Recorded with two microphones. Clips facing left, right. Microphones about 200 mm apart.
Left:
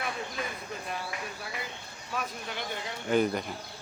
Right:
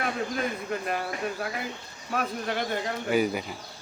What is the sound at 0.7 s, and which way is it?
Speech, 65° right (ahead or behind).